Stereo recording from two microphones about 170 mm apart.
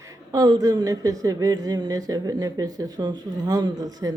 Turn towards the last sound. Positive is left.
turn(degrees=-20)  # may be behind; listen again after turning